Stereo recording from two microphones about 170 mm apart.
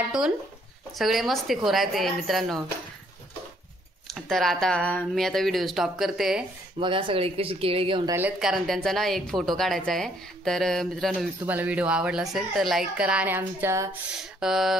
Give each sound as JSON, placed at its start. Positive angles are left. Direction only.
{"t": 0.9, "sound": "a woman's voice", "side_deg": 0}
{"t": 4.1, "sound": "a woman's voice", "side_deg": 0}
{"t": 6.8, "sound": "speech", "side_deg": -30}
{"t": 8.4, "sound": "a woman's voice", "side_deg": 0}
{"t": 11.4, "sound": "a woman's voice", "side_deg": -10}
{"t": 14.4, "sound": "a woman's voice", "side_deg": 0}